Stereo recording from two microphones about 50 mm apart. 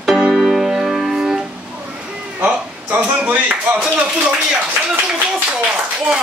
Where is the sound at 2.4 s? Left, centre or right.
Right.